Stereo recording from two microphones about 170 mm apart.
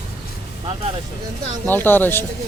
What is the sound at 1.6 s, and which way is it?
Speech, 10° left (ahead or behind).